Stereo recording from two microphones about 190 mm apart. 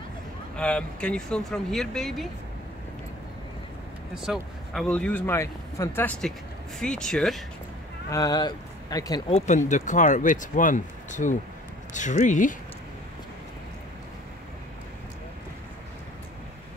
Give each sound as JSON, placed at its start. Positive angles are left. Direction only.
{"t": 0.6, "sound": "speech", "side_deg": 5}
{"t": 4.1, "sound": "speech", "side_deg": 0}
{"t": 8.1, "sound": "speech", "side_deg": 20}
{"t": 9.7, "sound": "speech", "side_deg": 40}